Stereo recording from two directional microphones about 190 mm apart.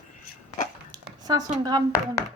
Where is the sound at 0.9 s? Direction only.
20° right (ahead or behind).